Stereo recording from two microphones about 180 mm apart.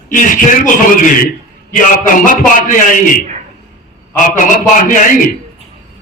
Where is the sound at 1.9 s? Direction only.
45° left (ahead or behind).